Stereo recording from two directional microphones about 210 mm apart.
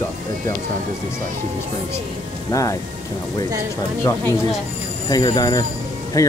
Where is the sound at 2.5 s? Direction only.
15° left (ahead or behind).